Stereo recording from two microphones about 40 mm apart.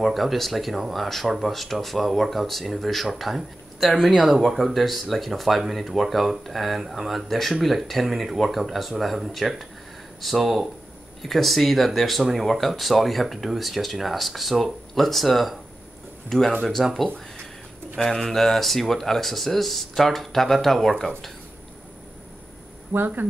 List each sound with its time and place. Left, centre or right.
0.0 s speech: centre
4.4 s speech: centre
16.3 s speech: centre
22.9 s speech: right